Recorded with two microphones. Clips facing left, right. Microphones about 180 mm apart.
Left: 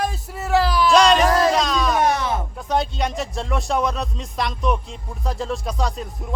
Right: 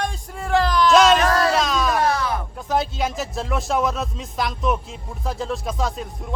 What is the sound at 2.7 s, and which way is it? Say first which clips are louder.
Speech: even; centre (ahead or behind).